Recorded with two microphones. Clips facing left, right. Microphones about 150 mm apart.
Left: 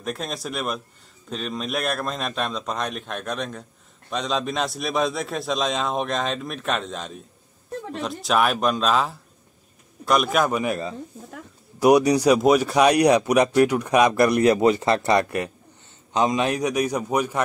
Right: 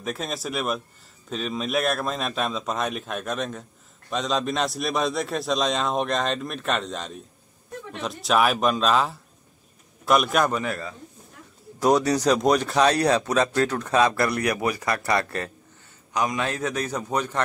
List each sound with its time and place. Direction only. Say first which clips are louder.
0.0 s a man's voice: even; centre (ahead or behind)
10.5 s speech: left 4 dB; 15° left (ahead or behind)